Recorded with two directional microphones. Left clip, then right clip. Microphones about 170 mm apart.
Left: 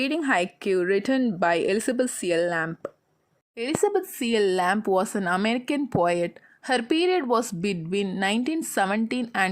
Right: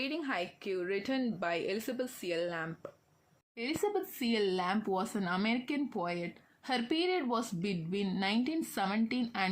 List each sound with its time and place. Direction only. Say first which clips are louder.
0.0 s a woman's voice: left 12 dB; 60° left (ahead or behind)
3.5 s speech: left 10 dB; 45° left (ahead or behind)